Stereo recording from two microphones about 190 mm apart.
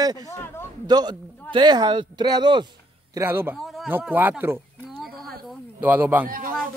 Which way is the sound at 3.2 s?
10° right (ahead or behind).